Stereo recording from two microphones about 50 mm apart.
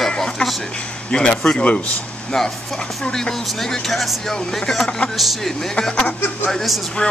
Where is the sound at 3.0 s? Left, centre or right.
Centre.